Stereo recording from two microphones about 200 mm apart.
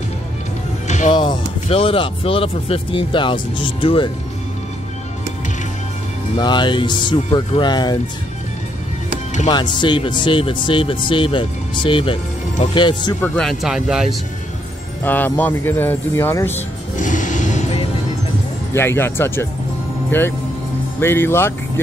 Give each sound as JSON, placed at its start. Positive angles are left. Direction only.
{"t": 0.8, "sound": "music", "side_deg": 35}
{"t": 1.1, "sound": "speech", "side_deg": 25}
{"t": 6.4, "sound": "speech", "side_deg": 20}
{"t": 9.5, "sound": "speech", "side_deg": 20}
{"t": 13.2, "sound": "speech", "side_deg": 5}
{"t": 15.0, "sound": "speech", "side_deg": 10}
{"t": 17.0, "sound": "music", "side_deg": 40}
{"t": 18.7, "sound": "speech", "side_deg": 10}